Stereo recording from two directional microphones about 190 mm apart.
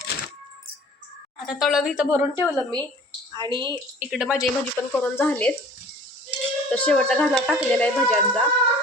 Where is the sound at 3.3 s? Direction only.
25° right (ahead or behind).